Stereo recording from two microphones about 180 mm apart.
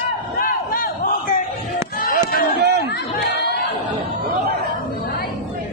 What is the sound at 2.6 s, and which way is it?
Chatter, 65° right (ahead or behind).